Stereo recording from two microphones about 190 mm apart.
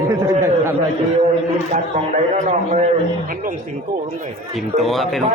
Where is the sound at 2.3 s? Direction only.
40° right (ahead or behind).